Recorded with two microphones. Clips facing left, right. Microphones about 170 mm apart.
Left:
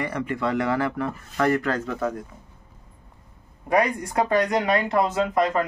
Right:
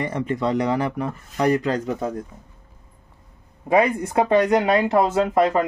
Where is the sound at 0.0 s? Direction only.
25° right (ahead or behind).